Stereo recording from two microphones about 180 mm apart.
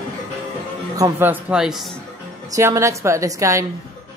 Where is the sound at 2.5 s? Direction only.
15° right (ahead or behind).